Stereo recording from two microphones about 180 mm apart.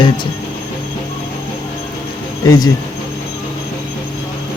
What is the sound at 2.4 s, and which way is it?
Speech, 20° left (ahead or behind).